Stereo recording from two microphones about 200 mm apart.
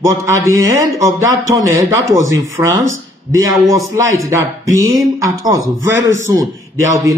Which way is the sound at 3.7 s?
15° right (ahead or behind).